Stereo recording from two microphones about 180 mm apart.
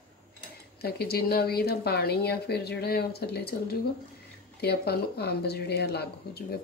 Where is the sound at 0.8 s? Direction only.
60° left (ahead or behind).